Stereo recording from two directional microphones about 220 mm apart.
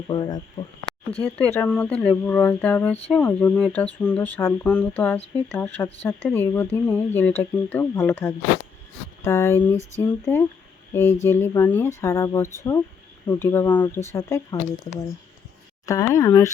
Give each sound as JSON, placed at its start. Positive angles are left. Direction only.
{"t": 0.1, "sound": "speech", "side_deg": 20}
{"t": 1.5, "sound": "speech", "side_deg": 5}
{"t": 16.1, "sound": "speech", "side_deg": 15}